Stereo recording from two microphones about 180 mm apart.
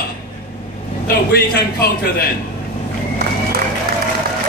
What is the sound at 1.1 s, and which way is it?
A man's voice, 60° left (ahead or behind).